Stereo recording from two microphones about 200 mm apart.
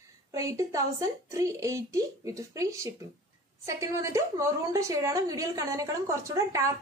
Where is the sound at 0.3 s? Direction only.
15° right (ahead or behind).